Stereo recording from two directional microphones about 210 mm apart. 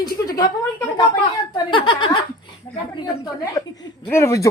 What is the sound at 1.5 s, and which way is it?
Speech, 20° left (ahead or behind).